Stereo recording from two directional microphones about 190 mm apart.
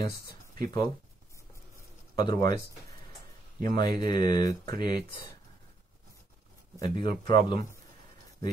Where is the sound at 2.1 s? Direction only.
20° left (ahead or behind).